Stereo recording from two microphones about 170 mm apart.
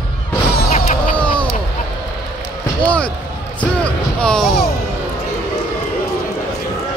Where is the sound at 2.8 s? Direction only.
5° left (ahead or behind).